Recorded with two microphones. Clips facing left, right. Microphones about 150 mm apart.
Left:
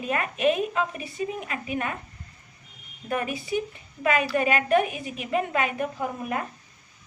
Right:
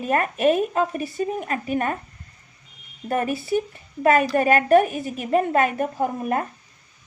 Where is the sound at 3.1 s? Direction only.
40° right (ahead or behind).